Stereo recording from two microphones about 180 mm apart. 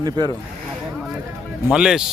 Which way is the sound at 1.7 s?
5° right (ahead or behind).